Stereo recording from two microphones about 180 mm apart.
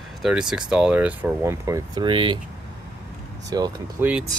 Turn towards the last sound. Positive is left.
turn(degrees=-10)  # may be behind; listen again after turning